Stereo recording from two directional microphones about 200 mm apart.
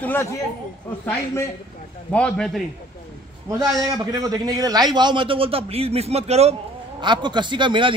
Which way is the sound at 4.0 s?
20° right (ahead or behind).